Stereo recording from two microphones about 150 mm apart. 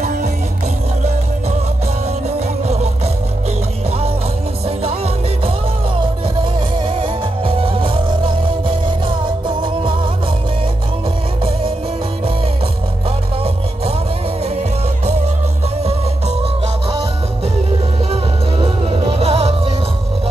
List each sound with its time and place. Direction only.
6.9 s music: 35° right (ahead or behind)
18.1 s music: 35° right (ahead or behind)